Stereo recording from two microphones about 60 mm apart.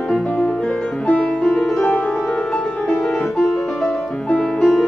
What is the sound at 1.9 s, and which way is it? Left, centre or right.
Music, left.